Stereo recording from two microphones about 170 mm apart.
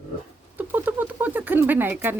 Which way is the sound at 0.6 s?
10° right (ahead or behind).